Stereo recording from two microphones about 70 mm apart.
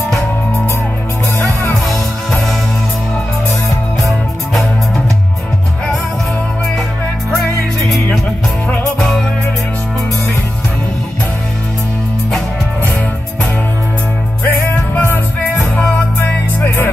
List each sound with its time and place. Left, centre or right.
1.9 s music: centre
14.4 s music: left
16.3 s music: left